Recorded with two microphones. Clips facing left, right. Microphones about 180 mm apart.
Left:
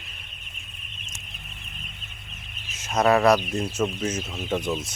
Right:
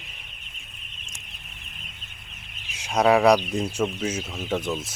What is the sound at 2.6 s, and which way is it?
Speech, 15° right (ahead or behind).